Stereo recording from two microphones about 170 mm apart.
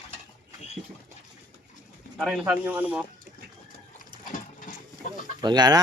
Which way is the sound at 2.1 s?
5° right (ahead or behind).